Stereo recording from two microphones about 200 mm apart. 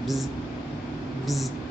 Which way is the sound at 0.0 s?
Centre (ahead or behind).